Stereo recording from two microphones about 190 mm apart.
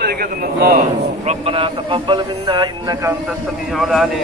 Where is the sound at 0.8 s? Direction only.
35° right (ahead or behind).